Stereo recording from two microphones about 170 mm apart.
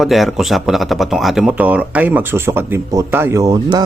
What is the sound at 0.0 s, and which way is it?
Speech, centre (ahead or behind).